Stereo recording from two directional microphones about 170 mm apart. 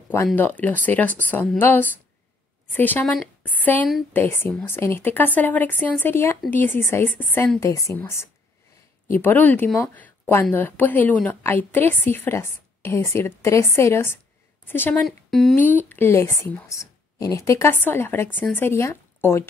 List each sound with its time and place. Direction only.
0.4 s speech: 10° left (ahead or behind)
15.0 s speech: centre (ahead or behind)
15.5 s speech: 10° left (ahead or behind)